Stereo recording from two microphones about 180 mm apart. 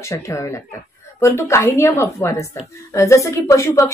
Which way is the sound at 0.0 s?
15° left (ahead or behind).